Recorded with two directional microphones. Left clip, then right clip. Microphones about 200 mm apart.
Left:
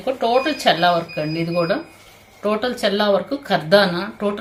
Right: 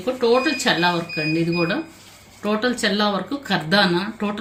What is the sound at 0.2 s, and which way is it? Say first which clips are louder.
A woman's voice: right 1 dB; 45° left (ahead or behind).